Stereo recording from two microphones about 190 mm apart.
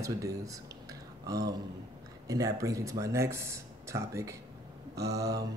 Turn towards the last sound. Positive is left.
turn(degrees=-60)  # may be behind; listen again after turning